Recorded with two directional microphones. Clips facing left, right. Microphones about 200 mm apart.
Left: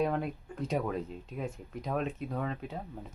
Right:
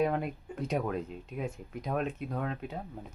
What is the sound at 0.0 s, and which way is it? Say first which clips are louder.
Speech: right 1 dB; 5° right (ahead or behind).